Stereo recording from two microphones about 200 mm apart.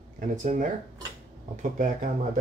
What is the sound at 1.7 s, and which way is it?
Speech, 40° right (ahead or behind).